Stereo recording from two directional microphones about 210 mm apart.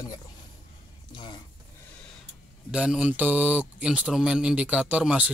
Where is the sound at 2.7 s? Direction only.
5° right (ahead or behind).